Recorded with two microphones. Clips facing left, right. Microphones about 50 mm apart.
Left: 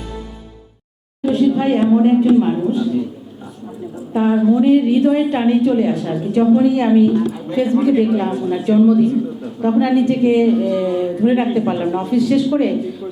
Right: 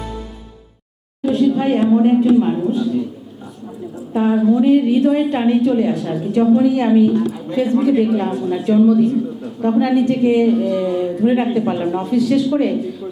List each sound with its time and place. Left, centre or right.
1.2 s a woman's voice: left
4.1 s a woman's voice: left
12.1 s a woman's voice: centre